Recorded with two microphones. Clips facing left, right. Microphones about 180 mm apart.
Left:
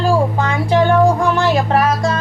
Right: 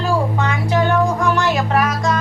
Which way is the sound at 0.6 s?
30° left (ahead or behind).